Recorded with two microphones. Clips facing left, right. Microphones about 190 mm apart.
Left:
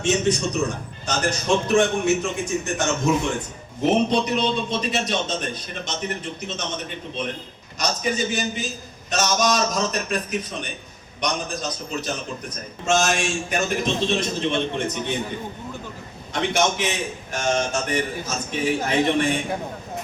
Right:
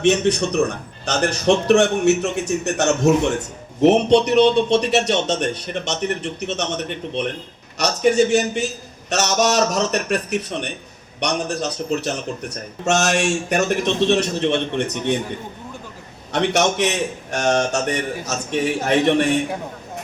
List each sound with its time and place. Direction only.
0.0 s a man's voice: 60° right (ahead or behind)
16.3 s a man's voice: 70° right (ahead or behind)